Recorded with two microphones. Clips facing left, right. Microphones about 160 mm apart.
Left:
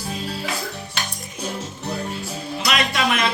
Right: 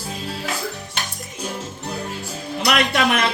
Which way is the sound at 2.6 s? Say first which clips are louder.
Right 3 dB; 55° right (ahead or behind).